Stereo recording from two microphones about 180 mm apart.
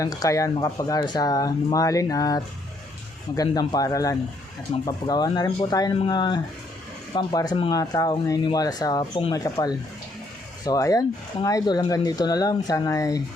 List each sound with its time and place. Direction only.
0.0 s speech: 20° left (ahead or behind)